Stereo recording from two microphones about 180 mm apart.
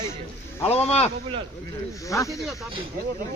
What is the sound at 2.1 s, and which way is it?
Speech, 20° left (ahead or behind).